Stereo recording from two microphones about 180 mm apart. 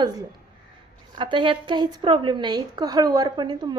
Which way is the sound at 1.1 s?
25° right (ahead or behind).